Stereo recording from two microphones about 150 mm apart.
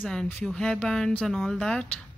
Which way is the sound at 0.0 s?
5° left (ahead or behind).